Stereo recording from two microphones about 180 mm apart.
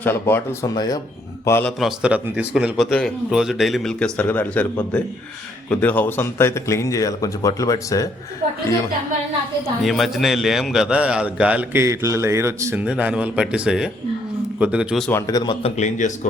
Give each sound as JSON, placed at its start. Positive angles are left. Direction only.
{"t": 0.0, "sound": "speech", "side_deg": 10}
{"t": 1.8, "sound": "a man's voice", "side_deg": -5}
{"t": 9.8, "sound": "a man's voice", "side_deg": 0}
{"t": 15.1, "sound": "a man's voice", "side_deg": 20}
{"t": 15.8, "sound": "speech", "side_deg": 45}